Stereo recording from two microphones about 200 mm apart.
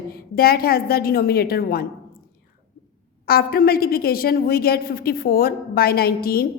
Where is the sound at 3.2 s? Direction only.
50° left (ahead or behind).